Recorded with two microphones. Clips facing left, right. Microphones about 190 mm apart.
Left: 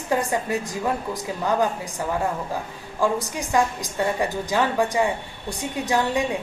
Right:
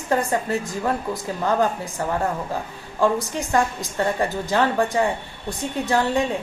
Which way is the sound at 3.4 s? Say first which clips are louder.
Right 1 dB; 15° left (ahead or behind).